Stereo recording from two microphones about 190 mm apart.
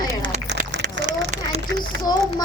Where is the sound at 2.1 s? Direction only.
20° left (ahead or behind).